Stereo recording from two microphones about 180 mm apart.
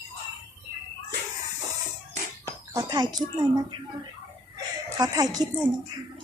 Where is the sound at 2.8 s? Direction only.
25° right (ahead or behind).